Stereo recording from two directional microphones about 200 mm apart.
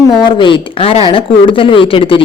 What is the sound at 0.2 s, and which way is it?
A woman's voice, 25° left (ahead or behind).